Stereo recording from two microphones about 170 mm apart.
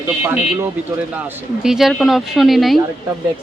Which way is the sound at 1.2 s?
5° right (ahead or behind).